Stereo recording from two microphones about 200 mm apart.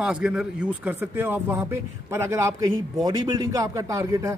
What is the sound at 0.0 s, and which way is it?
Speech, 5° right (ahead or behind).